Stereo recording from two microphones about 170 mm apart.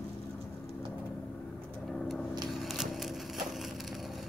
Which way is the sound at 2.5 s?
Centre (ahead or behind).